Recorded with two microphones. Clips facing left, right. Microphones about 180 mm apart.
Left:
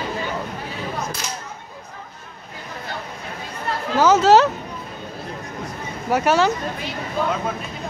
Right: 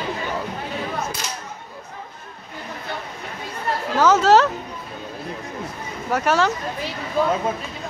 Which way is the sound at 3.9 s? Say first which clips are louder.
Left 1 dB; 5° left (ahead or behind).